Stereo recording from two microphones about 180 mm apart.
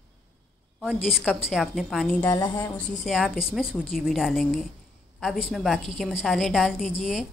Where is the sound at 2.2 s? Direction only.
20° left (ahead or behind).